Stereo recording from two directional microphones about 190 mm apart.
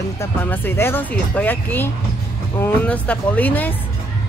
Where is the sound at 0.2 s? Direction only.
10° left (ahead or behind).